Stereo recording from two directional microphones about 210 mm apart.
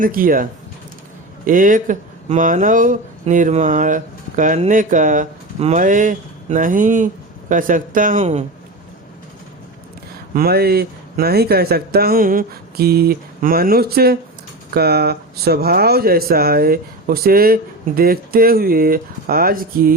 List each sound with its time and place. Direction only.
0.0 s speech: 40° right (ahead or behind)
1.5 s speech: 40° right (ahead or behind)
10.3 s speech: 45° right (ahead or behind)